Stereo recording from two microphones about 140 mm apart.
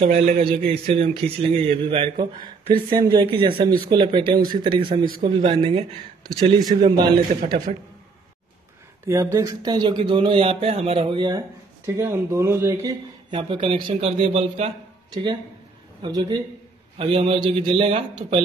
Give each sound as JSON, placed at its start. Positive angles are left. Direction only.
{"t": 0.0, "sound": "a man's voice", "side_deg": -55}
{"t": 0.5, "sound": "a man's voice", "side_deg": -40}
{"t": 9.0, "sound": "speech", "side_deg": -20}
{"t": 11.8, "sound": "speech", "side_deg": -20}
{"t": 13.3, "sound": "speech", "side_deg": -35}
{"t": 16.0, "sound": "speech", "side_deg": -30}
{"t": 17.0, "sound": "speech", "side_deg": -40}